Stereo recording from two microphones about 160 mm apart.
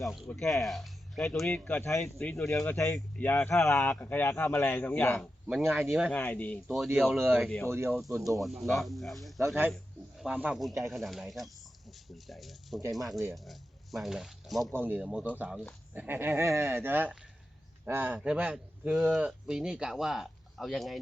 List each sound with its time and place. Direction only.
0.0 s speech: centre (ahead or behind); by 2.0 s 15° left (ahead or behind)
2.4 s speech: 5° left (ahead or behind)
2.7 s a man's voice: 20° left (ahead or behind); by 6.1 s 5° right (ahead or behind)
6.1 s a man's voice: 10° left (ahead or behind)
6.8 s speech: 5° right (ahead or behind)
7.7 s speech: 15° right (ahead or behind)
8.4 s speech: centre (ahead or behind)
14.7 s speech: 10° right (ahead or behind)